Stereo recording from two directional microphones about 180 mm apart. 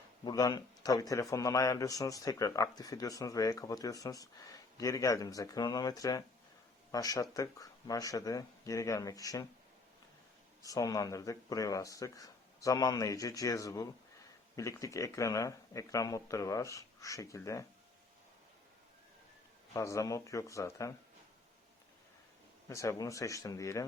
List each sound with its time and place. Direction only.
0.3 s a man's voice: 20° left (ahead or behind)
10.6 s a man's voice: 20° left (ahead or behind)
19.7 s speech: 15° left (ahead or behind)
22.7 s speech: 15° left (ahead or behind)